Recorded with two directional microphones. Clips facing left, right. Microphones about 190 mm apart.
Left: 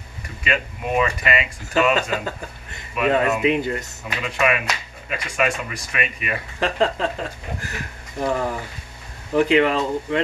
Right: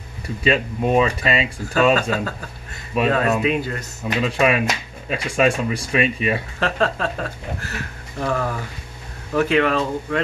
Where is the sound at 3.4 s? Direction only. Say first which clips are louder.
Left 2 dB; 20° left (ahead or behind).